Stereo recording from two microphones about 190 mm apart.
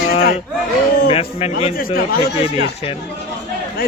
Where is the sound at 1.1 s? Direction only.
30° left (ahead or behind).